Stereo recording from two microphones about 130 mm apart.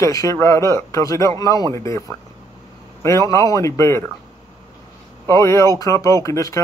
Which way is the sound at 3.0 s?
25° left (ahead or behind).